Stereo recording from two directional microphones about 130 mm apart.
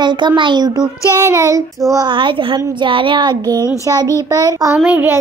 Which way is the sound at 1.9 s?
35° right (ahead or behind).